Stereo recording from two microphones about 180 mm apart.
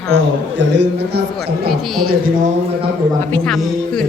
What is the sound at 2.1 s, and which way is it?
Speech, 50° right (ahead or behind).